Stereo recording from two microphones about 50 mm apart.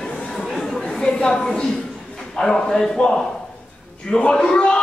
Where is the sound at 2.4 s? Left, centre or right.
Centre.